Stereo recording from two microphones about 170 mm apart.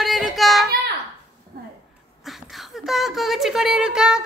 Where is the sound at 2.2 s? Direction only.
Centre (ahead or behind).